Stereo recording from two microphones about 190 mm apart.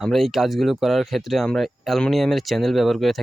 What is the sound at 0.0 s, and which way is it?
Speech, centre (ahead or behind).